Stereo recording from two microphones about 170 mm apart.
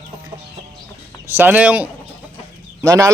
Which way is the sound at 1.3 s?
10° right (ahead or behind).